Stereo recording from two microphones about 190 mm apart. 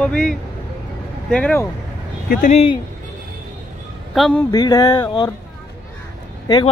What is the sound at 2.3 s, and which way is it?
Speech, 40° left (ahead or behind).